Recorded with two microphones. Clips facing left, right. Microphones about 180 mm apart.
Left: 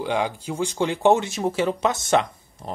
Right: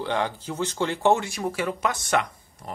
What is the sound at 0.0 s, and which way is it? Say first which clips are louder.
Speech: left 2 dB; 10° left (ahead or behind).